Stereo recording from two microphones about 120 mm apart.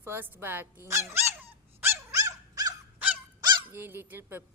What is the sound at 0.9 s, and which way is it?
Dog, 25° right (ahead or behind).